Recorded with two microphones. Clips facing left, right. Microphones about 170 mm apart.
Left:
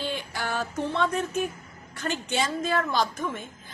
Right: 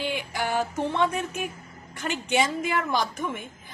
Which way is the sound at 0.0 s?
15° right (ahead or behind).